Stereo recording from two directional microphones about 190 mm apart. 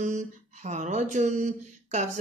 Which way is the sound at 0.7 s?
40° right (ahead or behind).